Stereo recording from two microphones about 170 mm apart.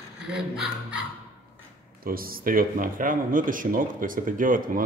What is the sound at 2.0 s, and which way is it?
Speech, 60° right (ahead or behind).